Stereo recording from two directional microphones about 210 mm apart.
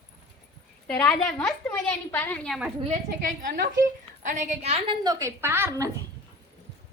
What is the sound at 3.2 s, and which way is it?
A woman's voice, 40° right (ahead or behind).